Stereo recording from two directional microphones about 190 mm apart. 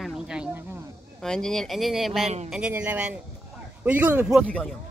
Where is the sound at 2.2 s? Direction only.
35° right (ahead or behind).